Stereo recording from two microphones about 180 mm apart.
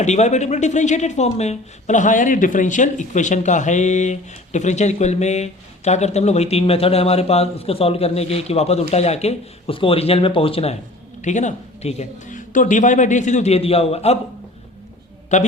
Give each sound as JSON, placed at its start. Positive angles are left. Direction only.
{"t": 0.0, "sound": "speech", "side_deg": 40}
{"t": 15.3, "sound": "a man's voice", "side_deg": 40}